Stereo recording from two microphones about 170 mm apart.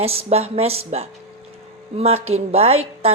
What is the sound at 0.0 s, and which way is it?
A woman's voice, 35° right (ahead or behind).